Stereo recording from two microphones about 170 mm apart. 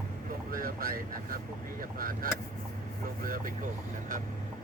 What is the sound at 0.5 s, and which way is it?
Speech, 60° right (ahead or behind).